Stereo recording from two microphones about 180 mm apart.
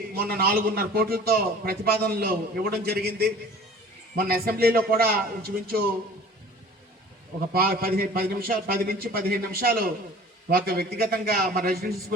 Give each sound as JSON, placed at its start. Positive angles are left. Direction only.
{"t": 0.2, "sound": "a man's voice", "side_deg": -55}
{"t": 7.5, "sound": "a man's voice", "side_deg": -55}